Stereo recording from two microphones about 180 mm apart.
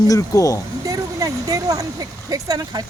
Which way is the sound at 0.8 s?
20° right (ahead or behind).